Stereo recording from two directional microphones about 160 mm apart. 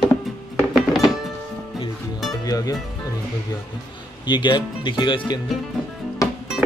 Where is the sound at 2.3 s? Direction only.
20° left (ahead or behind).